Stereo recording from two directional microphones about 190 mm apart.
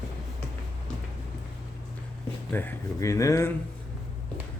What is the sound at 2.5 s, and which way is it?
A man's voice, 15° left (ahead or behind).